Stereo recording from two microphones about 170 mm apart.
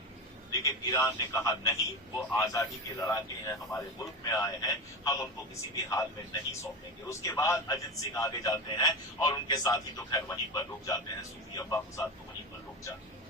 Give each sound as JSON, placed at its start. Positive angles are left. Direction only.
{"t": 0.5, "sound": "a man's voice", "side_deg": 20}
{"t": 7.1, "sound": "a man's voice", "side_deg": 20}